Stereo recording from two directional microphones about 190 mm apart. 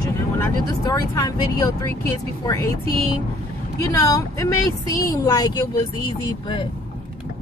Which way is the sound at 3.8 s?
15° left (ahead or behind).